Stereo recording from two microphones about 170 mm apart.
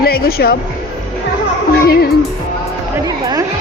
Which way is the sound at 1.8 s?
60° left (ahead or behind).